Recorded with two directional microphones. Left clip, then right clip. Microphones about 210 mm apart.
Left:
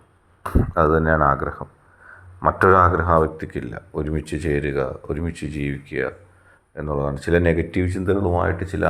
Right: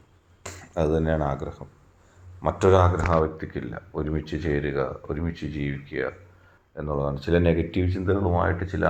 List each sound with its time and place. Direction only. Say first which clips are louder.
0.4 s speech: left 8 dB; 5° left (ahead or behind)
3.1 s speech: left 5 dB; 30° left (ahead or behind)